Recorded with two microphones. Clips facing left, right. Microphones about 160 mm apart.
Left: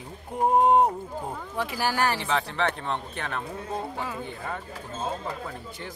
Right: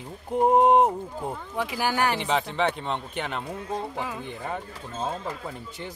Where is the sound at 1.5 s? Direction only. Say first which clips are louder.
Right 1 dB; 15° right (ahead or behind).